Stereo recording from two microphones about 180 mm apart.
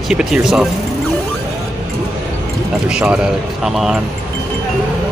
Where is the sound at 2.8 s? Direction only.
5° right (ahead or behind).